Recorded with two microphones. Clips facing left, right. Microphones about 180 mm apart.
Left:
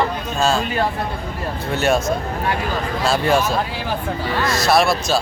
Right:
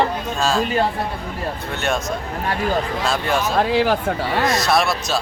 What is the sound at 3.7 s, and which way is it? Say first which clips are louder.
Speech: right 8 dB; 80° right.